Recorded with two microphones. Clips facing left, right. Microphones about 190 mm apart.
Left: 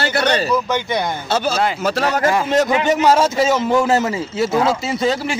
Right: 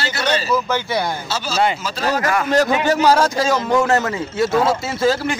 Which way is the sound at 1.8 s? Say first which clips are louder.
Left 3 dB; 60° left (ahead or behind).